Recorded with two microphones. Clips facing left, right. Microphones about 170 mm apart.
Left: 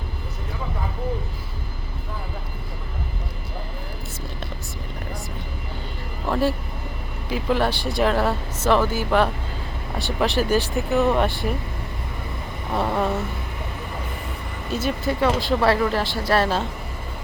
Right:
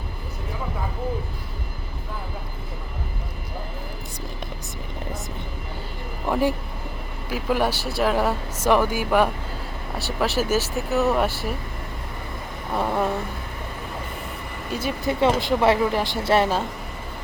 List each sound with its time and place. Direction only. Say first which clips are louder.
6.2 s speech: even; 15° right (ahead or behind)
12.7 s speech: left 1 dB; 5° right (ahead or behind)
14.7 s speech: left 1 dB; 10° right (ahead or behind)